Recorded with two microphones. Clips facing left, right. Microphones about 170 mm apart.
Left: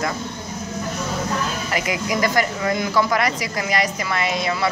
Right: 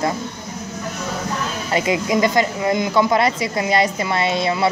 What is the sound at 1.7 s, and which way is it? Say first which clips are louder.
Speech: right 7 dB; 25° right (ahead or behind).